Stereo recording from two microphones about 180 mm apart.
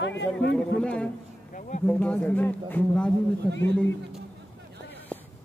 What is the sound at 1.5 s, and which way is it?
Speech, 45° left (ahead or behind).